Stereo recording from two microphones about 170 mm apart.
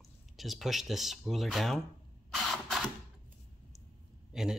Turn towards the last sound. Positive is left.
turn(degrees=0)  # may be behind; listen again after turning